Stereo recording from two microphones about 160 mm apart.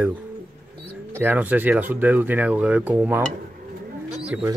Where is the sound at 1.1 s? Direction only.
10° right (ahead or behind).